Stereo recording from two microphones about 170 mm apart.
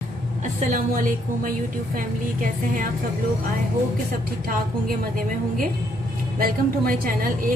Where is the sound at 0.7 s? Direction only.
55° right (ahead or behind).